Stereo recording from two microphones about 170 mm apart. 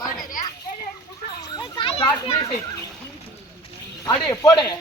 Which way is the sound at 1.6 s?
30° left (ahead or behind).